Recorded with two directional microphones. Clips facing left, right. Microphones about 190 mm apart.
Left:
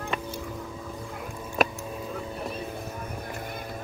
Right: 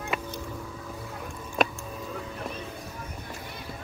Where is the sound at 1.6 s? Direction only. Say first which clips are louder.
Left 1 dB; 5° left (ahead or behind).